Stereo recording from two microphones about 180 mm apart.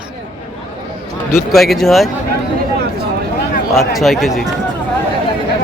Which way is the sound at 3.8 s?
Centre (ahead or behind).